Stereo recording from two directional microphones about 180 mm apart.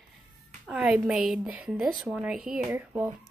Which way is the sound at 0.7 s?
5° right (ahead or behind).